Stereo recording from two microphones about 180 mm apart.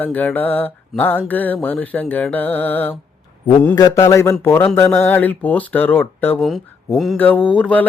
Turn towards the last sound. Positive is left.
turn(degrees=5)  # may be behind; listen again after turning